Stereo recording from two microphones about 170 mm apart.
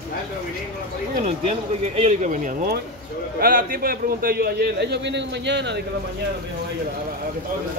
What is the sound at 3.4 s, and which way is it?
A man's voice, 60° right (ahead or behind).